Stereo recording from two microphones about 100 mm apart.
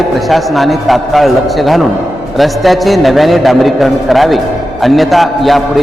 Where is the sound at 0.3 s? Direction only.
Centre (ahead or behind).